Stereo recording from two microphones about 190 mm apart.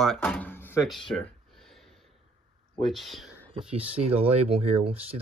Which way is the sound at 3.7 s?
30° right (ahead or behind).